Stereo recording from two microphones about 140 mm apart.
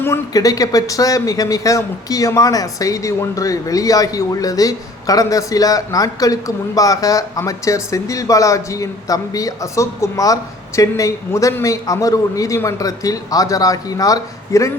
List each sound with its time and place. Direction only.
0.0 s speech: 20° left (ahead or behind)